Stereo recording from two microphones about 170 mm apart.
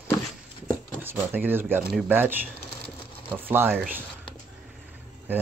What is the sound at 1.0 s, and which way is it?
Speech, 10° right (ahead or behind).